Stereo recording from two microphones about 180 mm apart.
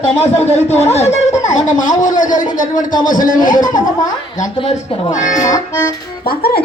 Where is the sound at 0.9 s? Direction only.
35° left (ahead or behind).